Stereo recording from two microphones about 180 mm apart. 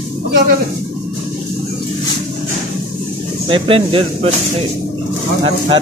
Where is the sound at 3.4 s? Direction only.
30° right (ahead or behind).